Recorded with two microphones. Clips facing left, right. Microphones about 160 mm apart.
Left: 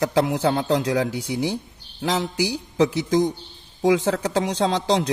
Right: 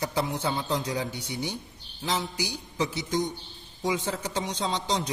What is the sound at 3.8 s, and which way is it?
Speech, 85° left.